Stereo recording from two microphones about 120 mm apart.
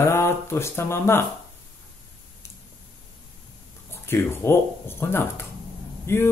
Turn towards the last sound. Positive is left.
turn(degrees=20)  # may be behind; listen again after turning